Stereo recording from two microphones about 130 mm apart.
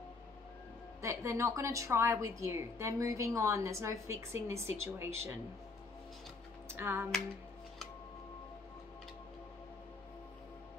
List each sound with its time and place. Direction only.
1.0 s a woman's voice: 25° right (ahead or behind)
6.7 s music: 20° right (ahead or behind)